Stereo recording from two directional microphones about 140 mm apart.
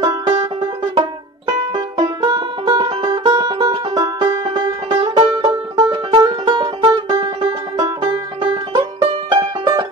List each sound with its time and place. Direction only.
0.0 s music: 35° right (ahead or behind)
2.2 s music: 35° right (ahead or behind)
8.0 s music: 35° right (ahead or behind)